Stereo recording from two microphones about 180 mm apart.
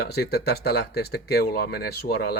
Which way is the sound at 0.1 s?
60° left (ahead or behind).